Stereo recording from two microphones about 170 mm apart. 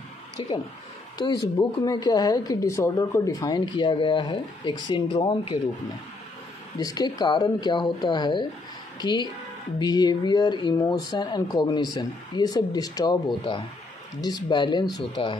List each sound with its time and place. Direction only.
1.1 s speech: 25° left (ahead or behind)
6.8 s speech: 20° left (ahead or behind)